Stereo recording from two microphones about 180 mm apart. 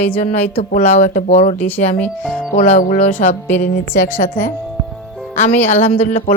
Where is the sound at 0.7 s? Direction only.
40° left (ahead or behind).